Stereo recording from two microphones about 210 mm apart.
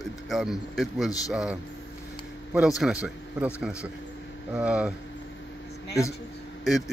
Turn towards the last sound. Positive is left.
turn(degrees=0)  # may be behind; listen again after turning